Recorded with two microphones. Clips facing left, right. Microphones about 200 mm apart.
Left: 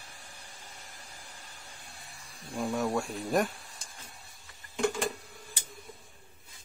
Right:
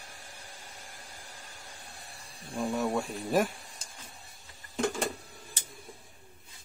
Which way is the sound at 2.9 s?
5° right (ahead or behind).